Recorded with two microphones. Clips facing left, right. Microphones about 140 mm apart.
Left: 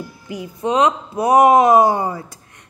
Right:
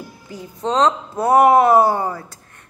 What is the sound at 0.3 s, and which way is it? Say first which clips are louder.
Speech: left 2 dB; 10° left (ahead or behind).